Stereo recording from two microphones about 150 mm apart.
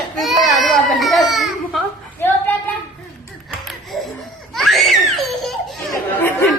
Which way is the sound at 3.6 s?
Centre (ahead or behind).